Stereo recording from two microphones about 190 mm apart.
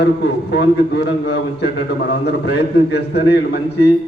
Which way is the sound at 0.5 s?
65° left (ahead or behind).